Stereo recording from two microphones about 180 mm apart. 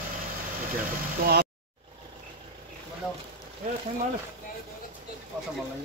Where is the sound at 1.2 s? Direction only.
55° right (ahead or behind).